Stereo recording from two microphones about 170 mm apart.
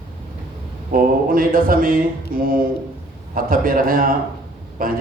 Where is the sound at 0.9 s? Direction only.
55° right (ahead or behind).